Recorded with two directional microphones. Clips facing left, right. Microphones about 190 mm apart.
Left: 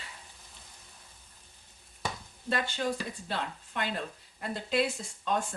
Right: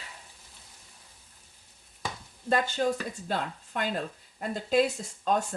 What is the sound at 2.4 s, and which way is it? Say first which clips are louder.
Speech: right 5 dB; 45° right (ahead or behind).